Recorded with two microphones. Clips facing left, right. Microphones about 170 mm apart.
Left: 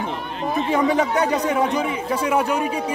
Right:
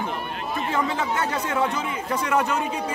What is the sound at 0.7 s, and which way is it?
Speech, 15° left (ahead or behind).